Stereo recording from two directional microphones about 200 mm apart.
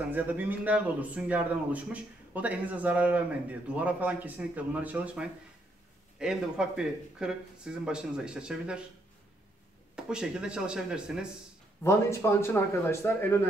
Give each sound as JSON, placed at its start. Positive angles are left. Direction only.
{"t": 0.1, "sound": "a man's voice", "side_deg": -10}
{"t": 9.9, "sound": "speech", "side_deg": -5}
{"t": 11.8, "sound": "speech", "side_deg": 15}